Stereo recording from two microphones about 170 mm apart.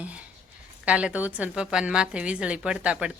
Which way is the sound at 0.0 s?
10° right (ahead or behind).